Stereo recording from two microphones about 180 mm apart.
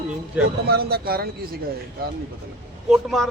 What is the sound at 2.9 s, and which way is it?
Speech, centre (ahead or behind).